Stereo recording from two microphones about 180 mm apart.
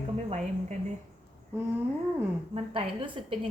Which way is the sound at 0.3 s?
40° right (ahead or behind).